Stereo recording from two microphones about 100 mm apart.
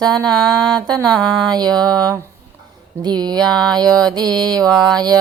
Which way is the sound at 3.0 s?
45° right (ahead or behind).